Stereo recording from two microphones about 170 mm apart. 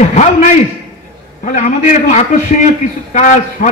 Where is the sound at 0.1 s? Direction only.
40° left (ahead or behind).